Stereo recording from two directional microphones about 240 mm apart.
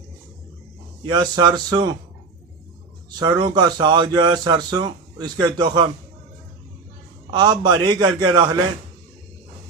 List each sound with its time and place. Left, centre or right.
1.1 s speech: centre
3.2 s speech: centre
7.3 s speech: centre